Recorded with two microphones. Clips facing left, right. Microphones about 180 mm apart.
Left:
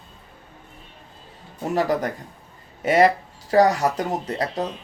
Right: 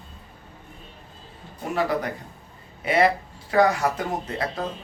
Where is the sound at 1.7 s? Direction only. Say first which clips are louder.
Left 3 dB; 40° left (ahead or behind).